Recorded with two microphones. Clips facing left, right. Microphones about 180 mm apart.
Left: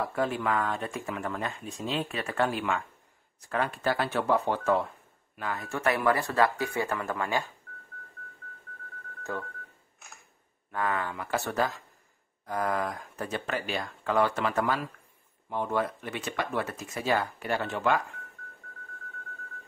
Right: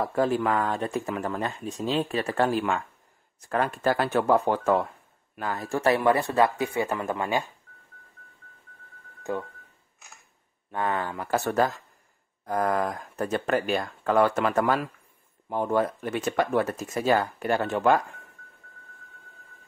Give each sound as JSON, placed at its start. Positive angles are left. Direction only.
{"t": 0.0, "sound": "speech", "side_deg": -40}
{"t": 9.2, "sound": "speech", "side_deg": -15}
{"t": 10.7, "sound": "speech", "side_deg": -30}